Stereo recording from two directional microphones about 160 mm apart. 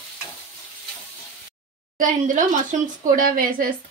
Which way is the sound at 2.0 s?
50° right (ahead or behind).